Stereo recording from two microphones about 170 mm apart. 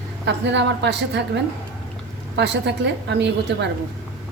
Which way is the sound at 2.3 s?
85° right.